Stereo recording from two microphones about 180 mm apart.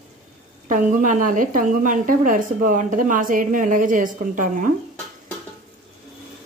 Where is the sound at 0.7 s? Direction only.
45° right (ahead or behind).